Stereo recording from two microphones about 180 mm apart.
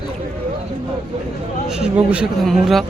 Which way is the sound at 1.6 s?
5° right (ahead or behind).